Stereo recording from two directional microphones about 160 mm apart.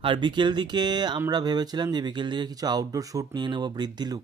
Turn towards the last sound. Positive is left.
turn(degrees=-25)  # may be behind; listen again after turning